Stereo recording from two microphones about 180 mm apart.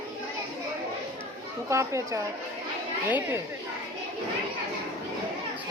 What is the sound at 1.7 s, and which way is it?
A woman's voice, 15° right (ahead or behind).